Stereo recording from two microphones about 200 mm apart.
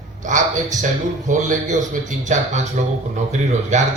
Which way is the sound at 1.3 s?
40° right (ahead or behind).